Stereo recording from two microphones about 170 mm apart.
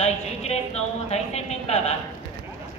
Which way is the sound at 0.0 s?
40° left (ahead or behind).